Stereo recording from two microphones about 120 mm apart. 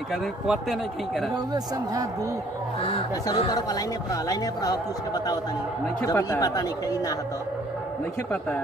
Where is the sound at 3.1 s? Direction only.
30° left (ahead or behind).